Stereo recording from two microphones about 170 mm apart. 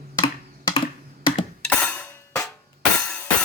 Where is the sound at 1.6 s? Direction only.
10° left (ahead or behind).